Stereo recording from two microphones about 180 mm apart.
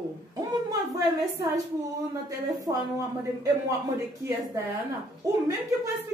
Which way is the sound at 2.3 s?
20° right (ahead or behind).